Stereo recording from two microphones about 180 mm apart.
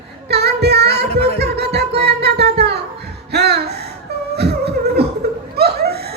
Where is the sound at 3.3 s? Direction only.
65° right (ahead or behind).